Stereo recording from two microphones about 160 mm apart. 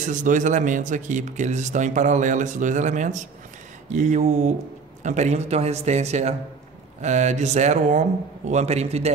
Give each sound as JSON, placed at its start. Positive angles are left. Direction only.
{"t": 0.0, "sound": "speech", "side_deg": -50}